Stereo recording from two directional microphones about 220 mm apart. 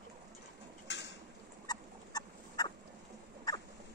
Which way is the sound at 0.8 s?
55° left (ahead or behind).